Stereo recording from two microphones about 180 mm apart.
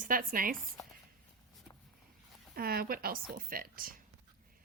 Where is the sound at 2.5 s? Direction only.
55° right (ahead or behind).